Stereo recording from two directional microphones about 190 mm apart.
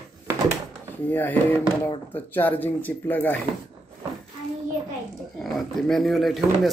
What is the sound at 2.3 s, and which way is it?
Speech, 10° left (ahead or behind).